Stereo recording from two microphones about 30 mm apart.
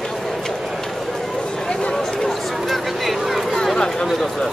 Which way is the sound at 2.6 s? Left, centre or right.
Centre.